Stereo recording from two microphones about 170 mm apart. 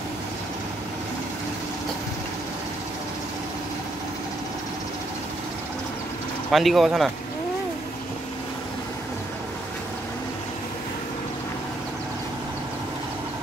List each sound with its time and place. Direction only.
6.5 s speech: centre (ahead or behind)